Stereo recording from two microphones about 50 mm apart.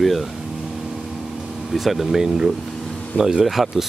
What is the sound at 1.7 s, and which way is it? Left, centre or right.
Speech, centre.